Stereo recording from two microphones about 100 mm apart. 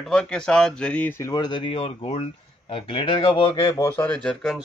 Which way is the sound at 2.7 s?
60° left (ahead or behind).